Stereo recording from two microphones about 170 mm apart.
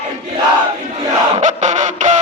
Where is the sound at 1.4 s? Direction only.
45° right (ahead or behind).